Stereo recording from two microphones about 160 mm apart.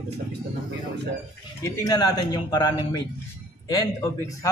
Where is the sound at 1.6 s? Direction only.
25° left (ahead or behind).